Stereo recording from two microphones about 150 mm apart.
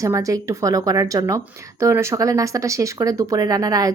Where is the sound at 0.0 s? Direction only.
20° right (ahead or behind).